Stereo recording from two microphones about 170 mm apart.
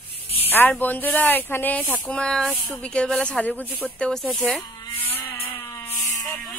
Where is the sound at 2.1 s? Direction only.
5° left (ahead or behind).